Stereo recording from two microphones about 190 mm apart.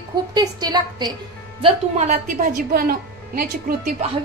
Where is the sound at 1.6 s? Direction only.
40° right (ahead or behind).